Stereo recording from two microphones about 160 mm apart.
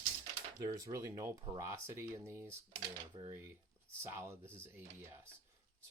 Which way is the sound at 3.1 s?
30° right (ahead or behind).